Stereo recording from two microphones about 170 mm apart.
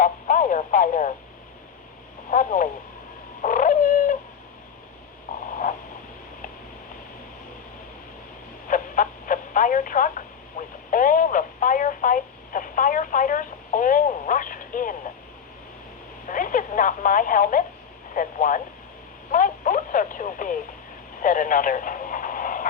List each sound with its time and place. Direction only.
0.0 s radio: 50° left (ahead or behind)
2.3 s speech: 50° left (ahead or behind)
3.4 s bird: 50° left (ahead or behind)
5.3 s a sound: 55° left (ahead or behind)
8.6 s telephone: 50° left (ahead or behind)
10.6 s radio: 50° left (ahead or behind)
16.3 s radio: 50° left (ahead or behind)
18.1 s speech: 50° left (ahead or behind)
19.3 s radio: 50° left (ahead or behind)